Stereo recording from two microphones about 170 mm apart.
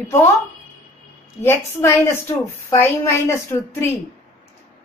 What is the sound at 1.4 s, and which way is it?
A woman's voice, 15° left (ahead or behind).